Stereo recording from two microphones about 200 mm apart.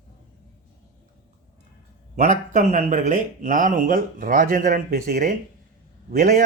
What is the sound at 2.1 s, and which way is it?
A man's voice, 35° right (ahead or behind).